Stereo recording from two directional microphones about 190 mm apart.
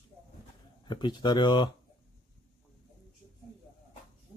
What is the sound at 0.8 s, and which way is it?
Speech, 25° left (ahead or behind).